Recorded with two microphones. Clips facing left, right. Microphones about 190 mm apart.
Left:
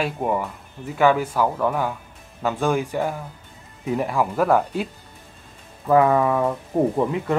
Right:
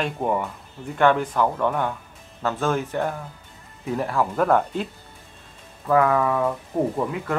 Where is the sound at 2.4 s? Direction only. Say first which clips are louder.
Left 2 dB; 15° left (ahead or behind).